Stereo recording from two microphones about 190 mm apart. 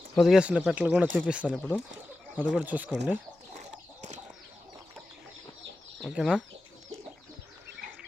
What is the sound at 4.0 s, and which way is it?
Bird flight, 40° right (ahead or behind).